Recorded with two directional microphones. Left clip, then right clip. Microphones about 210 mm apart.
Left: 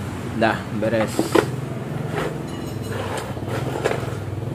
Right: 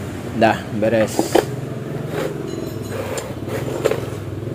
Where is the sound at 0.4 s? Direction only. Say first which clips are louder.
Right 4 dB; 15° right (ahead or behind).